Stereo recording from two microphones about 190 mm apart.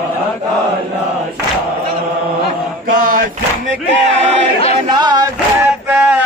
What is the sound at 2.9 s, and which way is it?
Male singing, 45° right (ahead or behind).